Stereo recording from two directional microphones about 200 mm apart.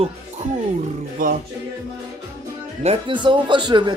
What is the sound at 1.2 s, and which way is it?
Music, 40° right (ahead or behind).